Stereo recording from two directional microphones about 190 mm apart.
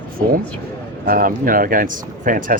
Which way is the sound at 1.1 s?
50° right (ahead or behind).